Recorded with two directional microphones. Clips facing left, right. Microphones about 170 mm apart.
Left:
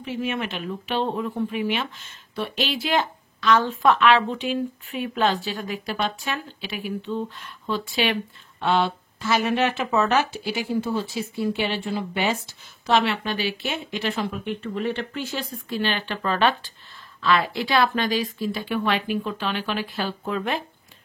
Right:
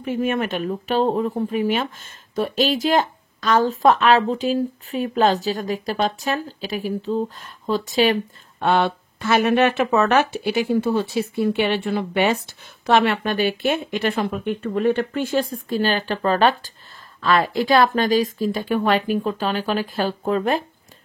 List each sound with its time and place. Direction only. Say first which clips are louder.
0.0 s speech: right 5 dB; 50° right (ahead or behind)